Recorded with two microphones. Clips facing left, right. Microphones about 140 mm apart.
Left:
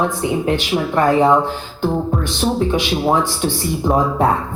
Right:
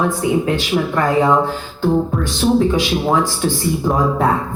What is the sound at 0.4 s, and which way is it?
Speech, 20° left (ahead or behind).